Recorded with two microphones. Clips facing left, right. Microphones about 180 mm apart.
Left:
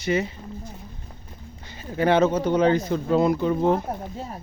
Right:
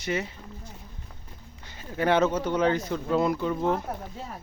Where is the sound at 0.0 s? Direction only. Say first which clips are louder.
Left 6 dB; 15° left (ahead or behind).